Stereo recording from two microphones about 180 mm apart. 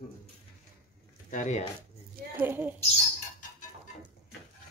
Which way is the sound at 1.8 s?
55° right (ahead or behind).